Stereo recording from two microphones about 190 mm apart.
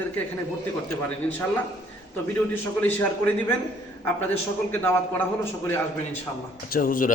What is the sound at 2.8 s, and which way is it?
Speech, 10° left (ahead or behind).